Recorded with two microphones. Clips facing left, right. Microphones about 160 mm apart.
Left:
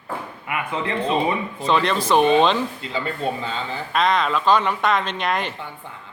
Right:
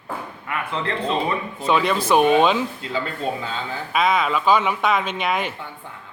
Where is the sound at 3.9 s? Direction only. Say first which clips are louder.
Even; 5° right (ahead or behind).